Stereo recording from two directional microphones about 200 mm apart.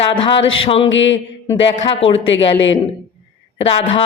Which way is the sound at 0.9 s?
70° left (ahead or behind).